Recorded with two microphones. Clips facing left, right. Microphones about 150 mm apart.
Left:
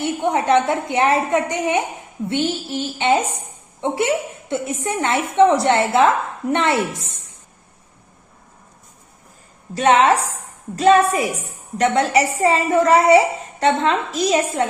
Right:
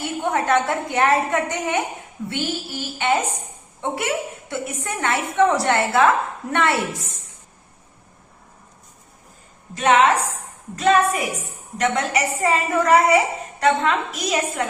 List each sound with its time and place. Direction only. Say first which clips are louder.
0.0 s a woman's voice: left 3 dB; 20° left (ahead or behind)
9.7 s a woman's voice: left 2 dB; 35° left (ahead or behind)